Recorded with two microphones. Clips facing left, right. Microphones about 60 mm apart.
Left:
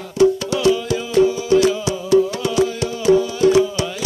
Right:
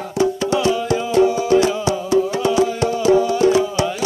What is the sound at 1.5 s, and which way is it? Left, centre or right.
Music, right.